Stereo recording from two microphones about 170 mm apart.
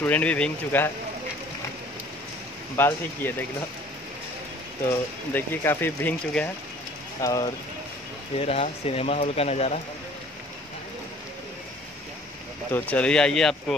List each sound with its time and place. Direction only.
0.0 s speech: 10° left (ahead or behind)
2.7 s speech: 10° left (ahead or behind)
5.3 s speech: 10° left (ahead or behind)
7.2 s speech: 20° left (ahead or behind)
8.4 s speech: 35° left (ahead or behind)
12.7 s speech: 10° left (ahead or behind)